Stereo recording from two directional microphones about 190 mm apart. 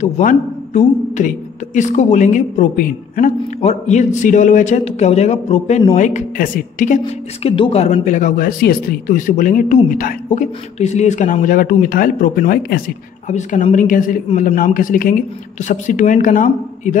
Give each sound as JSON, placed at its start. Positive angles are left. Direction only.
{"t": 0.0, "sound": "a woman's voice", "side_deg": 40}
{"t": 7.4, "sound": "speech", "side_deg": 30}
{"t": 13.3, "sound": "speech", "side_deg": 40}